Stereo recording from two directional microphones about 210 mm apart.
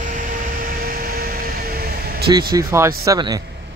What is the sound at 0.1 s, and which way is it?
Vehicle, 40° right (ahead or behind).